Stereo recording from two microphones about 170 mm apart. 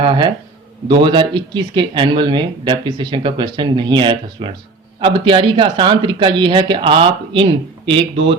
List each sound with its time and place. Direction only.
0.0 s speech: 25° right (ahead or behind)